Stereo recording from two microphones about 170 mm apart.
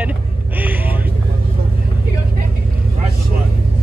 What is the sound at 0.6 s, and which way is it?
Vehicle, 10° right (ahead or behind).